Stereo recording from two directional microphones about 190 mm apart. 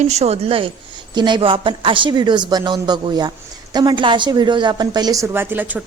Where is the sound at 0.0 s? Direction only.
35° right (ahead or behind).